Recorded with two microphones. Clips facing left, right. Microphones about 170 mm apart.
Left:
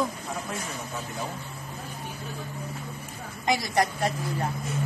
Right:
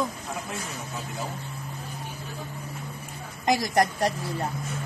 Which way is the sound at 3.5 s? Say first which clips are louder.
Right 2 dB; 40° right (ahead or behind).